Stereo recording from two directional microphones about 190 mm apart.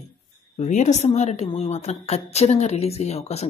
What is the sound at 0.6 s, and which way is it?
Speech, 40° left (ahead or behind).